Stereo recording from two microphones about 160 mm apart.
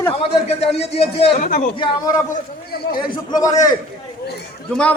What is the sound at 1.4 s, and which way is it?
Speech, 55° left (ahead or behind).